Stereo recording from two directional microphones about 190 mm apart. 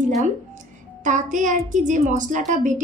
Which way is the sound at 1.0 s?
40° right (ahead or behind).